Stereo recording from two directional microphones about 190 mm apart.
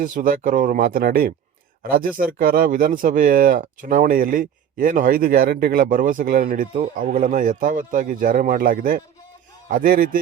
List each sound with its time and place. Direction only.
0.0 s speech: 45° right (ahead or behind)